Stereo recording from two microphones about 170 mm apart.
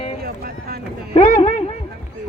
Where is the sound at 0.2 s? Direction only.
65° right (ahead or behind).